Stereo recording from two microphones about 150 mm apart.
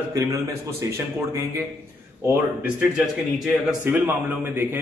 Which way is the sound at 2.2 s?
15° right (ahead or behind).